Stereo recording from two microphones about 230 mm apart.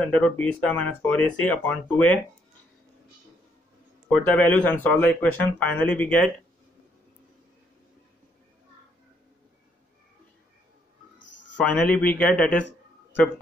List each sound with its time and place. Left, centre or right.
0.0 s speech: centre
4.1 s speech: centre
11.1 s cricket: left
11.5 s speech: centre